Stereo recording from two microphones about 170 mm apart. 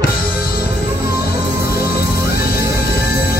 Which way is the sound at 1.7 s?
65° left (ahead or behind).